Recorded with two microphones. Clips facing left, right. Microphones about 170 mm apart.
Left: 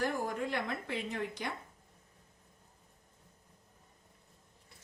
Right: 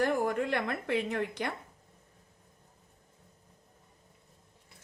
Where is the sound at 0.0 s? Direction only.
65° right (ahead or behind).